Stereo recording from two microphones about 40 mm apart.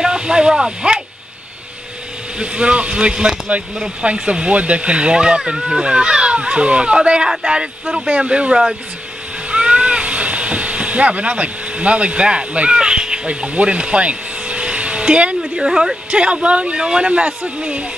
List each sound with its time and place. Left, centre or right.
0.0 s speech: right
2.3 s speech: right
9.5 s a sound: right
15.6 s a woman's voice: centre
16.1 s speech: right